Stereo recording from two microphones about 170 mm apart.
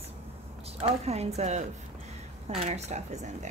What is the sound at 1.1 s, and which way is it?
Speech, 40° right (ahead or behind).